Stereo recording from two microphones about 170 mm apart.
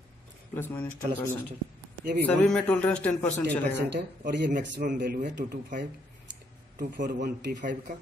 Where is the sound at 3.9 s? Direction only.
85° right.